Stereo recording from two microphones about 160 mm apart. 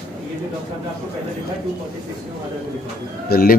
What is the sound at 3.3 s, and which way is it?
Speech, 75° left (ahead or behind).